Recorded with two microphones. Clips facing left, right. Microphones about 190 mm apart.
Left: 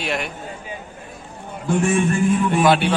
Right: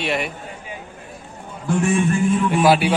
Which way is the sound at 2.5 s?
5° right (ahead or behind).